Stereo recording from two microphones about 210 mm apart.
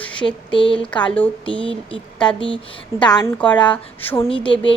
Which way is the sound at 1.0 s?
5° left (ahead or behind).